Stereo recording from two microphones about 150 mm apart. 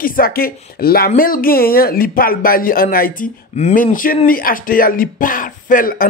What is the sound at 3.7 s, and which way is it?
Speech, 65° left (ahead or behind).